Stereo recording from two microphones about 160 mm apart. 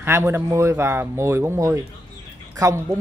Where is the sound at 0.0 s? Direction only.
15° right (ahead or behind).